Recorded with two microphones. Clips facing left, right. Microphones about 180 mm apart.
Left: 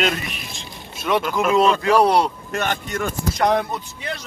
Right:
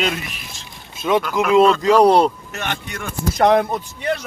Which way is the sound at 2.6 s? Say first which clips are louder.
Left 4 dB; 45° left (ahead or behind).